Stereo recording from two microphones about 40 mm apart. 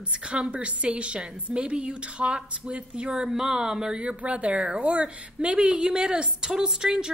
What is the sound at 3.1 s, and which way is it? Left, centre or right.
Speech, centre.